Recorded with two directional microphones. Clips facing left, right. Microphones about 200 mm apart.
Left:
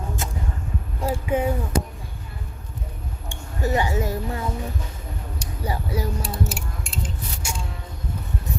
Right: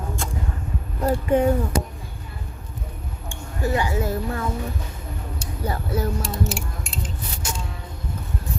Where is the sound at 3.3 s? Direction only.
20° left (ahead or behind).